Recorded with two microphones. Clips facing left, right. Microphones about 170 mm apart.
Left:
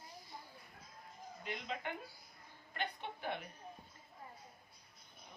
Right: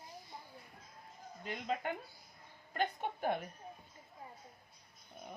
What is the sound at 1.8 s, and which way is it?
Speech, 45° right (ahead or behind).